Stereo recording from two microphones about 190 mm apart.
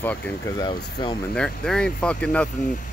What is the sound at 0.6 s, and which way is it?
Speech, 25° left (ahead or behind).